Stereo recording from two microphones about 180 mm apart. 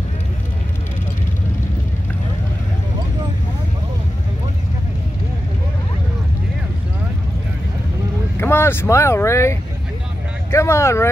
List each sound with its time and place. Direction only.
8.4 s speech: 10° left (ahead or behind)